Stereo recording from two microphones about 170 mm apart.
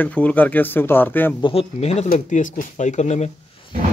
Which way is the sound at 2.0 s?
50° left (ahead or behind).